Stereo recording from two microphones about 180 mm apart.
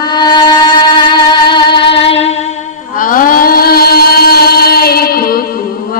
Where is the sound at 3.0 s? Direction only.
50° left (ahead or behind).